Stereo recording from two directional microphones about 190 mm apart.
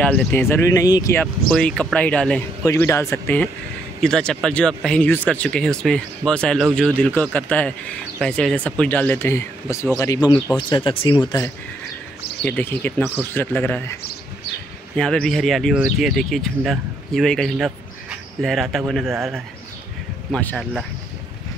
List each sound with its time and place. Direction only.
0.0 s speech: 10° left (ahead or behind); by 11.4 s 25° left (ahead or behind)
12.4 s speech: 10° left (ahead or behind)
15.0 s speech: 5° left (ahead or behind)
20.3 s speech: 5° left (ahead or behind)